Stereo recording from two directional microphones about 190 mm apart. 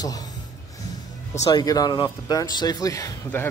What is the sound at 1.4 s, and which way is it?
Speech, 20° left (ahead or behind).